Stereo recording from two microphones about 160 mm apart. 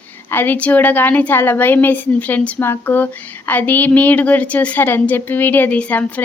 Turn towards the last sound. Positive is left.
turn(degrees=10)  # may be behind; listen again after turning